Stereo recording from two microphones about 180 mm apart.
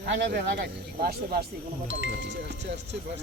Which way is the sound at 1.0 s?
60° right (ahead or behind).